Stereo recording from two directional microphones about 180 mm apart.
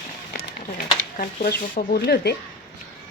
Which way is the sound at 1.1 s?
45° left (ahead or behind).